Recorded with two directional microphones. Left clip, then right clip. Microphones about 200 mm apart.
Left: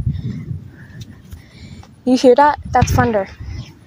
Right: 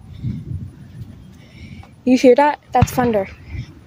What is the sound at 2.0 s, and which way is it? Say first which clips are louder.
Speech: left 1 dB; 5° right (ahead or behind).